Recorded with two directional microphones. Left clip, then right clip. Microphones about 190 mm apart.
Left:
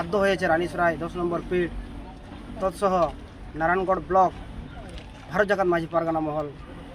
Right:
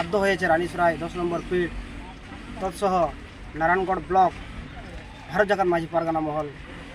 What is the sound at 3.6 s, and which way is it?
Speech, 15° left (ahead or behind).